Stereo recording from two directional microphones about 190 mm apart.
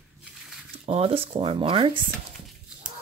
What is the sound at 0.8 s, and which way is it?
Speech, 30° right (ahead or behind).